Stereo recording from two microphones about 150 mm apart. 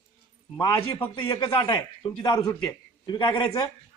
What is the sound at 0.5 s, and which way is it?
Speech, 25° left (ahead or behind).